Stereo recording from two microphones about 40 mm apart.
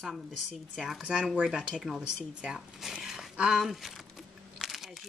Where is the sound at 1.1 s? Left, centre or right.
Right.